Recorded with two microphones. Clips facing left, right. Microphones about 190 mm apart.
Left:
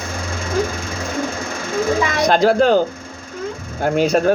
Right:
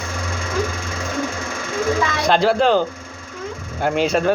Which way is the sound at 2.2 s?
45° left (ahead or behind).